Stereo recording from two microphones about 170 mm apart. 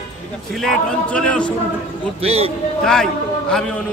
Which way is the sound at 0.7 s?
5° left (ahead or behind).